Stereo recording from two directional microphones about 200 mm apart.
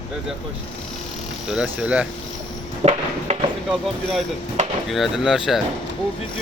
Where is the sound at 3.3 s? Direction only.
30° right (ahead or behind).